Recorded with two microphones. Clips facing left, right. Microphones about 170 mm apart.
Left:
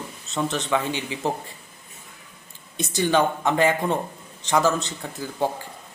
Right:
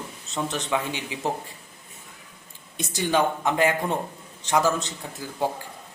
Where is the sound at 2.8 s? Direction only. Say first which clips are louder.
Left 2 dB; 10° right (ahead or behind).